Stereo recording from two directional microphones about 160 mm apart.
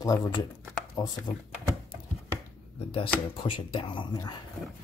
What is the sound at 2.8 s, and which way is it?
Speech, 35° left (ahead or behind).